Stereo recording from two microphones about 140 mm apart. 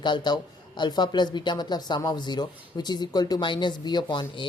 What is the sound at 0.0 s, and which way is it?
Speech, 30° left (ahead or behind).